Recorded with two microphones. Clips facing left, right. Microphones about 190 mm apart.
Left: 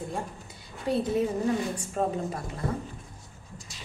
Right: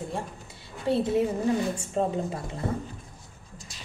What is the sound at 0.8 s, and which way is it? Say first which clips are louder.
Speech: right 2 dB; 25° right (ahead or behind).